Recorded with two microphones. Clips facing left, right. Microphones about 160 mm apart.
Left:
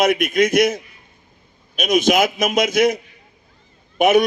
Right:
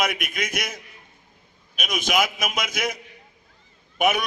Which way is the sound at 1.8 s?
25° left (ahead or behind).